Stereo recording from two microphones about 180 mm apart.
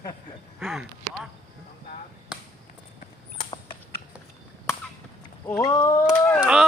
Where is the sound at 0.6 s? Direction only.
Centre (ahead or behind).